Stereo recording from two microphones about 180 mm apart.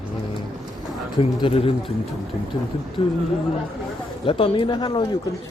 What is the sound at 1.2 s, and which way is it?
Speech, 30° left (ahead or behind).